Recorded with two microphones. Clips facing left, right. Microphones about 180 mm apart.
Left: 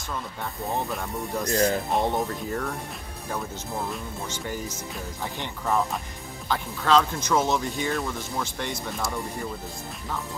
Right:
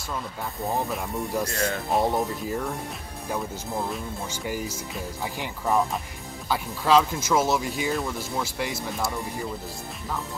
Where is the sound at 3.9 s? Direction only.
10° right (ahead or behind).